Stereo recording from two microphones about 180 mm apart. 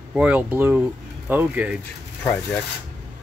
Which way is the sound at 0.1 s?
10° right (ahead or behind).